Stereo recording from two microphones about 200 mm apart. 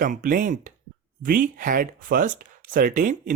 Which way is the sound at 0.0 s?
45° right (ahead or behind).